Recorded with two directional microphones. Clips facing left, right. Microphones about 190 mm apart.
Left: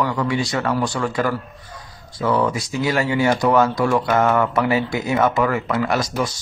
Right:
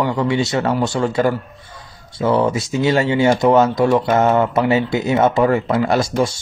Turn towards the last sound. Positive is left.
turn(degrees=-25)  # may be behind; listen again after turning